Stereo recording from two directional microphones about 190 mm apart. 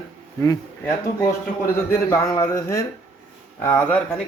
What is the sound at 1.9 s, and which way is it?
Speech, 15° left (ahead or behind).